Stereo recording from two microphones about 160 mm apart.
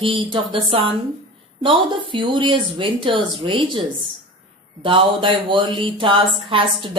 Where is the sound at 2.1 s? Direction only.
30° right (ahead or behind).